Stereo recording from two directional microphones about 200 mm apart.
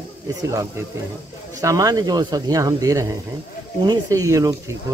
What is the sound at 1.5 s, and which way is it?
Speech, 15° right (ahead or behind).